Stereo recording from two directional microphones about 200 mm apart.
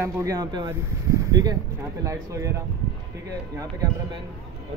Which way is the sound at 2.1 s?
15° right (ahead or behind).